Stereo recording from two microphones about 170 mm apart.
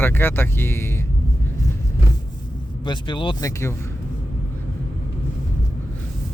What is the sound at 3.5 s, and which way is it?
Speech, 15° left (ahead or behind).